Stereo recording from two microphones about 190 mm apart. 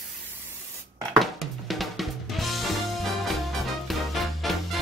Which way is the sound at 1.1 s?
Centre (ahead or behind).